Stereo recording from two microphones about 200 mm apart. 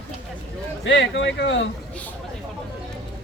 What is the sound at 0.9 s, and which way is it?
Speech, 65° left (ahead or behind).